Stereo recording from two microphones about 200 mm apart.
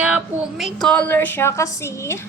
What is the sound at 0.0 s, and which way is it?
A woman's voice, 5° right (ahead or behind).